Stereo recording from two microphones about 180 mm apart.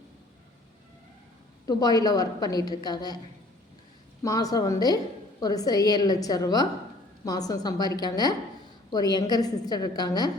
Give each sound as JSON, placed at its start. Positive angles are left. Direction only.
{"t": 1.6, "sound": "a woman's voice", "side_deg": 20}
{"t": 4.2, "sound": "a woman's voice", "side_deg": 20}